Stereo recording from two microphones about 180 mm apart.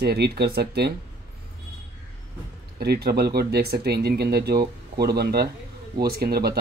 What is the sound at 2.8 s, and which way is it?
Speech, 60° right (ahead or behind).